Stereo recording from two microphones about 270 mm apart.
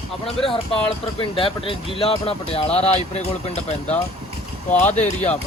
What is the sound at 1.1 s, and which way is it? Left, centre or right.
Speech, centre.